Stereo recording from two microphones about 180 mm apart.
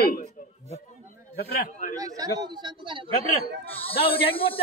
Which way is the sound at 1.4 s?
55° left (ahead or behind).